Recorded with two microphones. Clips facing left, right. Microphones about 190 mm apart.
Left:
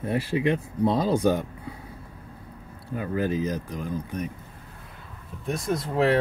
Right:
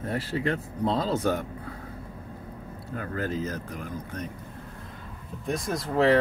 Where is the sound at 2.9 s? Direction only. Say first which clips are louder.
Left 4 dB; 15° left (ahead or behind).